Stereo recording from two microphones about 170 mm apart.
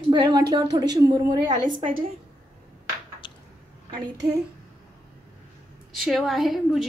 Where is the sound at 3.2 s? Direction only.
30° left (ahead or behind).